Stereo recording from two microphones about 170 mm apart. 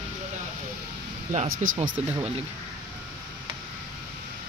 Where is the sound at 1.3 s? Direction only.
45° right (ahead or behind).